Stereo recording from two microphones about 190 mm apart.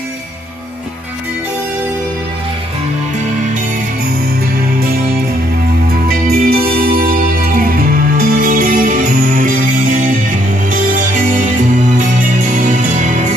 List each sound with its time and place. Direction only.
5.9 s music: 55° right (ahead or behind)